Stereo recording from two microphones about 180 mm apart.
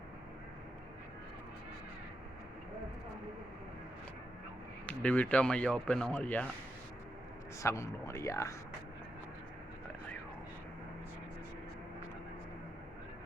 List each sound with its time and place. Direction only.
4.9 s speech: 10° left (ahead or behind)
7.6 s speech: 15° left (ahead or behind)